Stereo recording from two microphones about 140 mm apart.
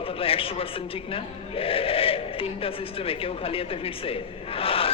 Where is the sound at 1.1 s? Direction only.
40° left (ahead or behind).